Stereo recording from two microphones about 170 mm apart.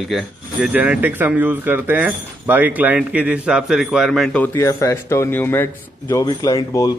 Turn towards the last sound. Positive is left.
turn(degrees=20)  # may be behind; listen again after turning